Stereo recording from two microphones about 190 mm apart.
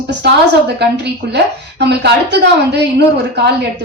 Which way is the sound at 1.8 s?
65° right (ahead or behind).